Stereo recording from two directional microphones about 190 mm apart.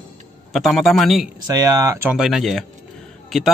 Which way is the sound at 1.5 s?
20° right (ahead or behind).